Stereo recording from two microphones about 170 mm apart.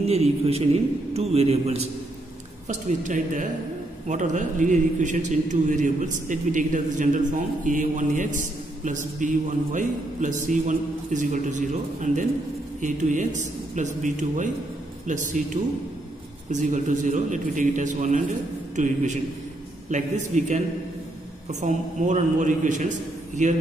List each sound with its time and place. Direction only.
0.0 s a man's voice: 40° right (ahead or behind)
19.9 s a man's voice: 45° right (ahead or behind)